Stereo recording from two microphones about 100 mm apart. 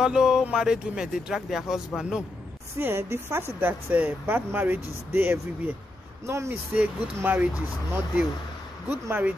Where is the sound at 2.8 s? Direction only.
25° right (ahead or behind).